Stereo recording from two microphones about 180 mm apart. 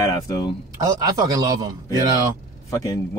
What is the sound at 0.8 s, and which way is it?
Speech, 20° right (ahead or behind).